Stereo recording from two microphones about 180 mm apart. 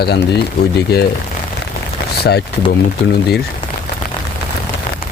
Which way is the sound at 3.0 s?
60° left (ahead or behind).